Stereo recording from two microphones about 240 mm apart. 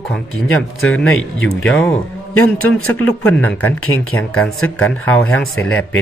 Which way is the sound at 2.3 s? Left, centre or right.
Left.